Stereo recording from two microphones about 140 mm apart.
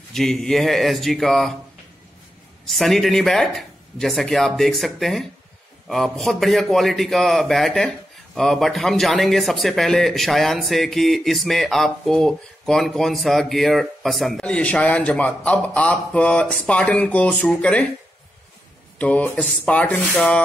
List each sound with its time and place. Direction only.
0.1 s a man's voice: 5° left (ahead or behind)
2.6 s a man's voice: centre (ahead or behind)
18.9 s speech: 10° left (ahead or behind)